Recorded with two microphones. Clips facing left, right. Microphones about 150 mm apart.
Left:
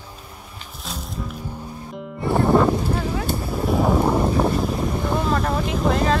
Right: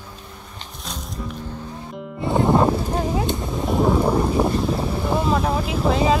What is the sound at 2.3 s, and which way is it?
Music, 20° right (ahead or behind).